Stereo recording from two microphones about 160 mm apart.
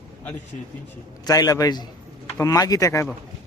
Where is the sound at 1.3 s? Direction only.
20° left (ahead or behind).